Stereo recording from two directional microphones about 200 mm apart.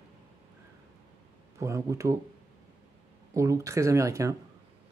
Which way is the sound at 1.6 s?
15° right (ahead or behind).